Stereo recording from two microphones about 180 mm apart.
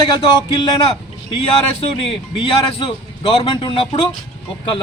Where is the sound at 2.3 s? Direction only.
30° left (ahead or behind).